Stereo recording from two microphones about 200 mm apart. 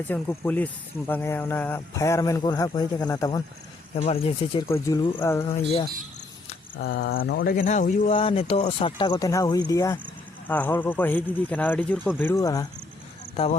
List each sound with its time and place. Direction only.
0.0 s speech: 10° left (ahead or behind)
3.9 s speech: 30° left (ahead or behind)
4.7 s speech: 15° left (ahead or behind)
5.5 s speech: 30° left (ahead or behind)
6.7 s speech: 50° left (ahead or behind); by 12.6 s 15° left (ahead or behind)
13.3 s speech: 30° left (ahead or behind)